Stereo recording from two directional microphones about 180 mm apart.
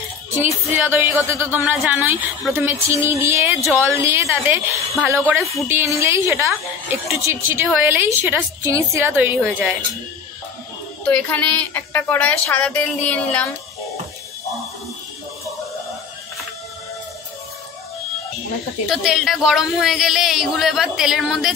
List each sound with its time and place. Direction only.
0.4 s music: 10° right (ahead or behind)
1.6 s a woman's voice: 10° right (ahead or behind)
5.4 s speech: centre (ahead or behind)
5.7 s a woman's voice: 15° right (ahead or behind)
11.1 s a woman's voice: 10° left (ahead or behind)
18.9 s speech: centre (ahead or behind)